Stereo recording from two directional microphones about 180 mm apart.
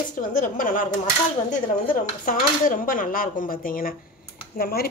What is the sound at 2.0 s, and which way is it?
Speech, 50° left (ahead or behind).